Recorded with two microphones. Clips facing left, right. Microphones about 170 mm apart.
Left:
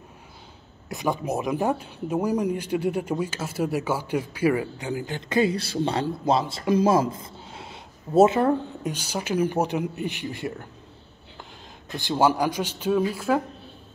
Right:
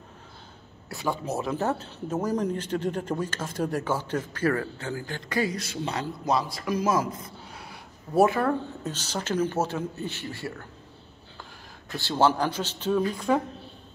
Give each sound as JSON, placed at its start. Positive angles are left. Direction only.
{"t": 0.8, "sound": "speech", "side_deg": 15}
{"t": 11.9, "sound": "speech", "side_deg": 15}